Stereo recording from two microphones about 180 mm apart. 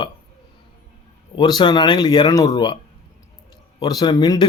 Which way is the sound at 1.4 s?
25° left (ahead or behind).